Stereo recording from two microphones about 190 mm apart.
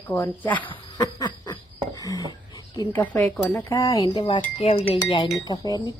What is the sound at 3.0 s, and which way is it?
Chink, 10° left (ahead or behind).